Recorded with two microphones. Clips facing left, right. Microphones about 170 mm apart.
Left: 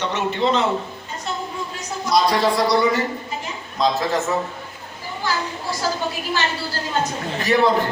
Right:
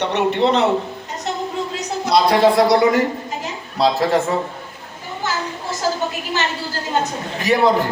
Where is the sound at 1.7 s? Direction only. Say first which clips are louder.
Right 2 dB; 65° right (ahead or behind).